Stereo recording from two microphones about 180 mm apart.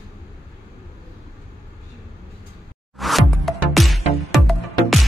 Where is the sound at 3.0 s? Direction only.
Centre (ahead or behind).